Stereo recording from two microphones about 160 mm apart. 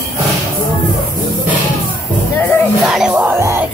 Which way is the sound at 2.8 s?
5° right (ahead or behind).